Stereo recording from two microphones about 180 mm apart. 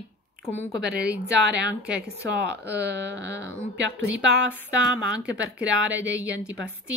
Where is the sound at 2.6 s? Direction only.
75° right (ahead or behind).